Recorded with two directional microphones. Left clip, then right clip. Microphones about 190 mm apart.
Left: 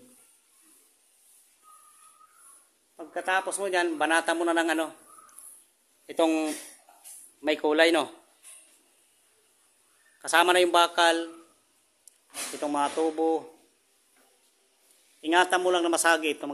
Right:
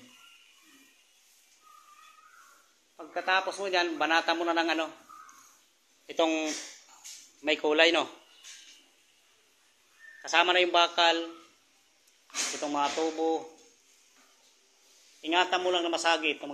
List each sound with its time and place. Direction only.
3.1 s a man's voice: 45° left (ahead or behind)
6.0 s speech: 40° left (ahead or behind)
10.2 s a man's voice: 50° left (ahead or behind)
12.5 s a man's voice: 50° left (ahead or behind)
15.2 s a man's voice: 55° left (ahead or behind)